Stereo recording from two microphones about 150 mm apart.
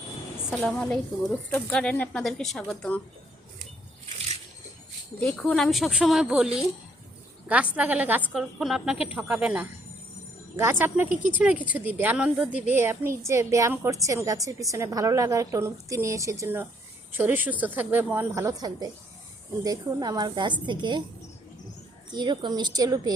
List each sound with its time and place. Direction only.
0.6 s speech: 5° left (ahead or behind)
5.2 s a woman's voice: 5° left (ahead or behind); by 21.0 s 30° right (ahead or behind)
22.1 s a woman's voice: 30° right (ahead or behind)